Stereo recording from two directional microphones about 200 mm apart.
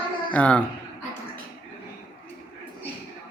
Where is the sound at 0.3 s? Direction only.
5° left (ahead or behind).